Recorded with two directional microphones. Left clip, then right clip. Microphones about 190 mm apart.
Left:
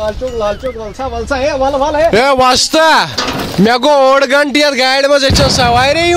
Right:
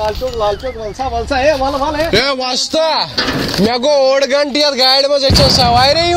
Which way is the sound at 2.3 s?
45° left (ahead or behind).